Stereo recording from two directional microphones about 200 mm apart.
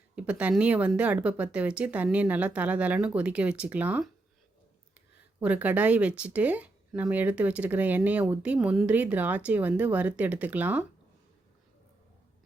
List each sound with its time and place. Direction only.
0.2 s speech: 5° right (ahead or behind)
5.4 s speech: 10° right (ahead or behind)